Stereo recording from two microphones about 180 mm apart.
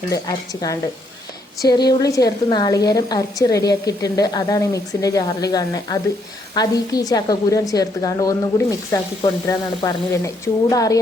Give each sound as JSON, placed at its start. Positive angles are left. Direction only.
{"t": 0.1, "sound": "a woman's voice", "side_deg": 20}